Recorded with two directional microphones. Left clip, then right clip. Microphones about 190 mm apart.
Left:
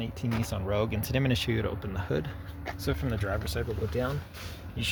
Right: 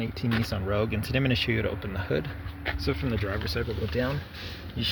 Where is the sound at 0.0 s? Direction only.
Centre (ahead or behind).